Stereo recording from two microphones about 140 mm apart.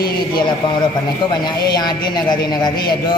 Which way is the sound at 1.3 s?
30° left (ahead or behind).